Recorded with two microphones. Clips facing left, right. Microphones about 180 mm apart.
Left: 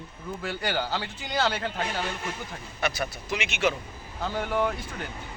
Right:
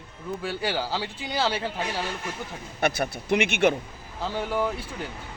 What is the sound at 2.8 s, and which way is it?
Speech, 55° right (ahead or behind).